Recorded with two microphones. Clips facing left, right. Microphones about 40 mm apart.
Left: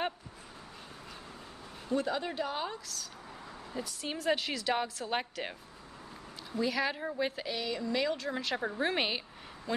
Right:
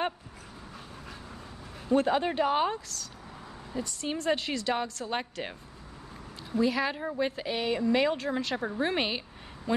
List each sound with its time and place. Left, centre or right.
2.0 s speech: right
3.7 s a woman's voice: centre
7.4 s speech: right
8.3 s a woman's voice: centre